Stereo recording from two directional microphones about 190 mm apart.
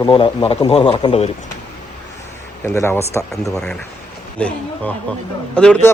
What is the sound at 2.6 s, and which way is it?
Speech, 15° left (ahead or behind).